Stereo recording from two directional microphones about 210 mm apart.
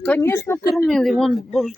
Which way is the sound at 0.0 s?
10° left (ahead or behind).